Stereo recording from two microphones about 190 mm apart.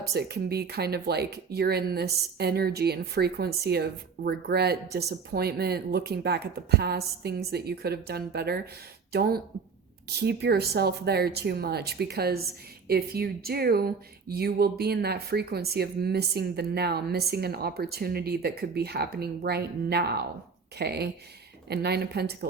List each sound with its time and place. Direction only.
0.1 s speech: 60° right (ahead or behind)
10.2 s speech: 60° right (ahead or behind)